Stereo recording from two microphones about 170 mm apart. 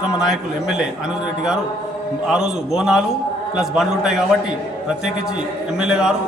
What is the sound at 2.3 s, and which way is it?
A man's voice, 5° right (ahead or behind).